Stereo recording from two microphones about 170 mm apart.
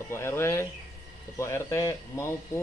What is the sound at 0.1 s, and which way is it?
Speech, 15° left (ahead or behind).